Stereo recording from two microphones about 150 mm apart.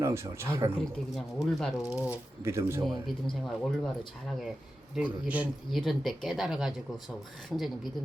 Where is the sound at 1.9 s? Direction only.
10° right (ahead or behind).